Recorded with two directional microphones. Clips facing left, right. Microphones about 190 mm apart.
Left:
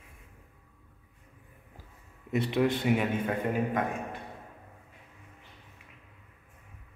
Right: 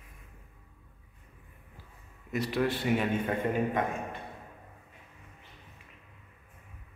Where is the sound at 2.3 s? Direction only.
25° left (ahead or behind).